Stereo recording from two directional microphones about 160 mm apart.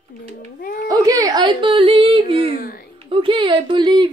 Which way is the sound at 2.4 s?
65° left (ahead or behind).